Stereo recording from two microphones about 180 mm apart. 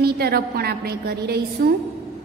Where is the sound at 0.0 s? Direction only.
60° right (ahead or behind).